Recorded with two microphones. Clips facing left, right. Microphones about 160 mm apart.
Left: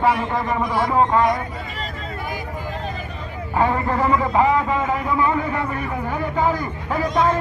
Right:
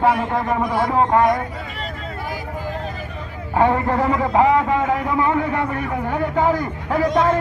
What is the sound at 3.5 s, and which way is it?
A man's voice, 65° right (ahead or behind).